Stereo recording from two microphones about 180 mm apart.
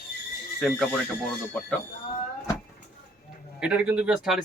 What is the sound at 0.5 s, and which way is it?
Speech, 5° left (ahead or behind).